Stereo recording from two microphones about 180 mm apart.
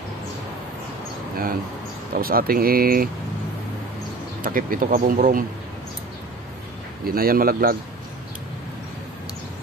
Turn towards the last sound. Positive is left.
turn(degrees=-55)  # may be behind; listen again after turning